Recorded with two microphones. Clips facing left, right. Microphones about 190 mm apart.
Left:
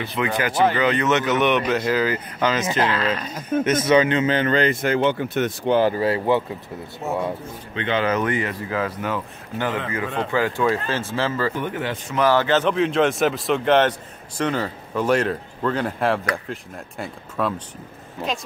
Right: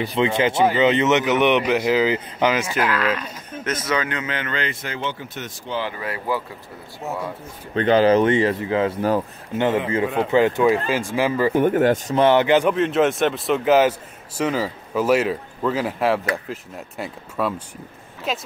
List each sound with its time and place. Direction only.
0.1 s speech: 25° right (ahead or behind)
2.8 s a man's voice: 25° left (ahead or behind); by 5.9 s 60° left (ahead or behind)
5.9 s speech: 30° left (ahead or behind)
7.7 s speech: 40° right (ahead or behind); by 11.5 s 15° right (ahead or behind)
11.5 s a man's voice: 50° right (ahead or behind)
12.2 s speech: 20° right (ahead or behind)
12.7 s speech: centre (ahead or behind)